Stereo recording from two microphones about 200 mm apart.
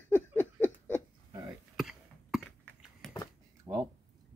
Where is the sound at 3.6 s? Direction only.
20° right (ahead or behind).